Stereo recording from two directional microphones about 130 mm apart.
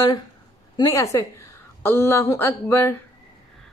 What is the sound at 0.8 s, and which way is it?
A woman's voice, 20° left (ahead or behind).